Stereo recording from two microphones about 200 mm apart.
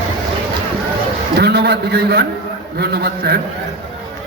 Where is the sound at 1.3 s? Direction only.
55° right (ahead or behind).